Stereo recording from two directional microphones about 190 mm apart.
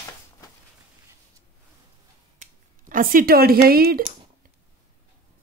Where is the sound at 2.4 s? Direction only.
45° right (ahead or behind).